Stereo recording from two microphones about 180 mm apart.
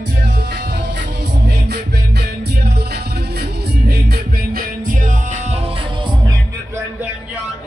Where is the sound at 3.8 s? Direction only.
55° right (ahead or behind).